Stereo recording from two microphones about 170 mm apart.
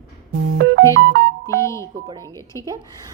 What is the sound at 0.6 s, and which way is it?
Music, 90° right.